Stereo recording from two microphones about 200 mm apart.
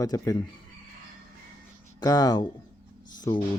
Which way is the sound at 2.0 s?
20° left (ahead or behind).